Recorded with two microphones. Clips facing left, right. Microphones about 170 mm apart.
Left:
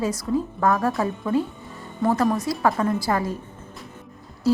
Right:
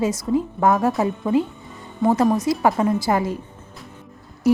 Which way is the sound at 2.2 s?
Centre (ahead or behind).